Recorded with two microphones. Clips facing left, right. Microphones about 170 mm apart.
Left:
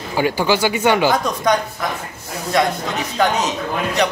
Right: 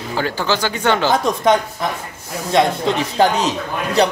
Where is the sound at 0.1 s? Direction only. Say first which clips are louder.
Left 3 dB; 10° left (ahead or behind).